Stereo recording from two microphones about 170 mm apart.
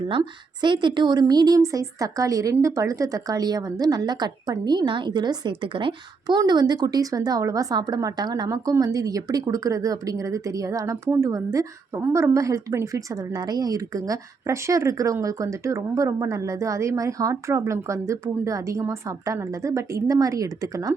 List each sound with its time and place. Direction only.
0.1 s a woman's voice: 25° right (ahead or behind)